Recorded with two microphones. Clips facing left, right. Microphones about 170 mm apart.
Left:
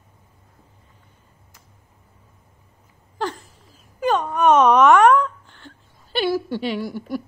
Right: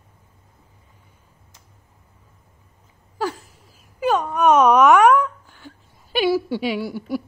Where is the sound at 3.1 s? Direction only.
10° right (ahead or behind).